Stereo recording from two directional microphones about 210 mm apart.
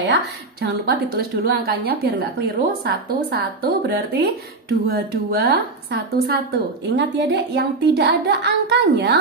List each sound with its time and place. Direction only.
0.6 s a woman's voice: 50° right (ahead or behind)